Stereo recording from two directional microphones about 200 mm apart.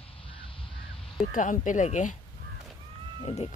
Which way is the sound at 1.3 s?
40° left (ahead or behind).